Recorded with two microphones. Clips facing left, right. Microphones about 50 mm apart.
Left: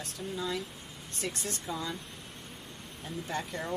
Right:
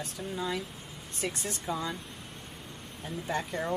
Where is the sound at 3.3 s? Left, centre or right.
Centre.